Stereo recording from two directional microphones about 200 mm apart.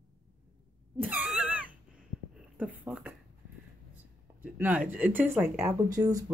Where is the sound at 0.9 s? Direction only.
5° right (ahead or behind).